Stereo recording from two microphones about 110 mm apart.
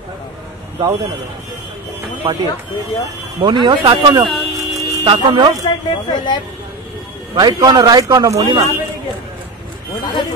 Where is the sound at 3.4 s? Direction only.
50° right (ahead or behind).